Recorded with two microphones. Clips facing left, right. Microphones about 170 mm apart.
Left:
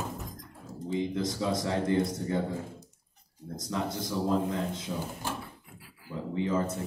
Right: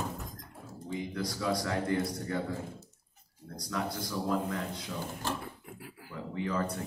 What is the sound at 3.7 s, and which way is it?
A man's voice, 20° left (ahead or behind).